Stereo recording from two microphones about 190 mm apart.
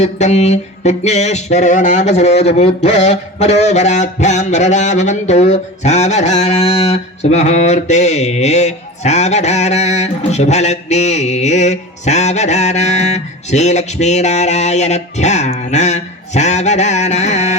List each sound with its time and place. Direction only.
0.0 s mantra: 35° left (ahead or behind)